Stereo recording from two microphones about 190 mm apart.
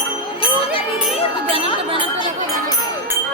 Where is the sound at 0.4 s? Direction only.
30° left (ahead or behind).